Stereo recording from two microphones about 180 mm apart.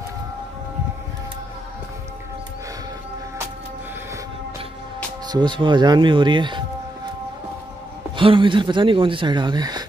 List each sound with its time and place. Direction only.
5.3 s speech: 25° right (ahead or behind)
8.2 s speech: 30° right (ahead or behind)